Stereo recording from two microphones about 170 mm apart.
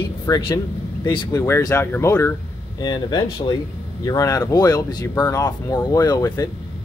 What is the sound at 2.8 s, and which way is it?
Speech, 25° left (ahead or behind).